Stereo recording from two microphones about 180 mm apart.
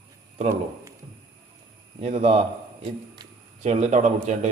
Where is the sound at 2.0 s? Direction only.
35° right (ahead or behind).